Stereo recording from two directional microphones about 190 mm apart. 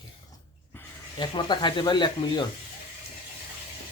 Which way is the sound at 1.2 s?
25° left (ahead or behind).